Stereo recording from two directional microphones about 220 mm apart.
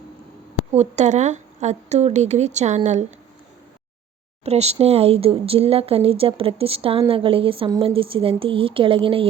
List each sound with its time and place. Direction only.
0.7 s a woman's voice: 30° right (ahead or behind)
4.4 s speech: 30° right (ahead or behind)